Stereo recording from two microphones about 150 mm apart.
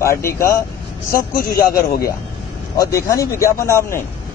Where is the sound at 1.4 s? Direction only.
85° left.